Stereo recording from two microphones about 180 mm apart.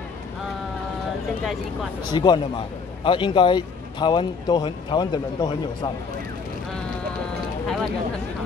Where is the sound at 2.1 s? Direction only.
25° left (ahead or behind).